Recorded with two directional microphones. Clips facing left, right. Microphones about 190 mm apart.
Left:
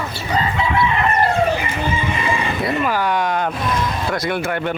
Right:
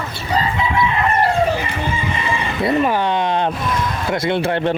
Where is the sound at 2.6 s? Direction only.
25° right (ahead or behind).